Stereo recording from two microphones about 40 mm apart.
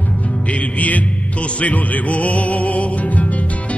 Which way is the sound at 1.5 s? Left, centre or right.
Left.